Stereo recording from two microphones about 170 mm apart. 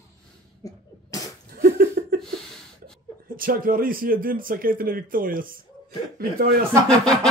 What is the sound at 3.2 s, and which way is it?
A man's voice, 55° right (ahead or behind).